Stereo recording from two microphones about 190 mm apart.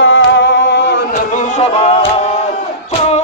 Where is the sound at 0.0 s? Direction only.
80° left; by 1.0 s 65° left (ahead or behind).